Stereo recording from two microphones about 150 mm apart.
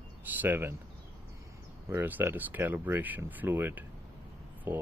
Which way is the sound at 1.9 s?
15° right (ahead or behind).